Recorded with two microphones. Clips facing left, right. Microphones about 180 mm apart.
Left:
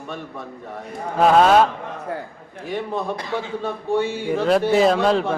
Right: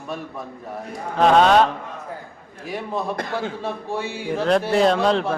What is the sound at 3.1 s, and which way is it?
Speech, 55° right (ahead or behind).